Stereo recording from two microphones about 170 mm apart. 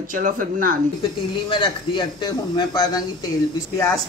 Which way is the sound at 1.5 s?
30° left (ahead or behind).